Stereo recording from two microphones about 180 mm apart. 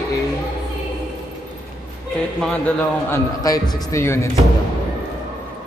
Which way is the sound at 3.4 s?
20° left (ahead or behind).